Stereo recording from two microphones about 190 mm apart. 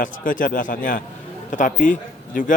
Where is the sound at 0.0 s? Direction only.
45° left (ahead or behind).